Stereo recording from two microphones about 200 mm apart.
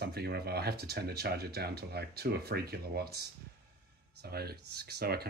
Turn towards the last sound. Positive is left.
turn(degrees=-50)  # may be behind; listen again after turning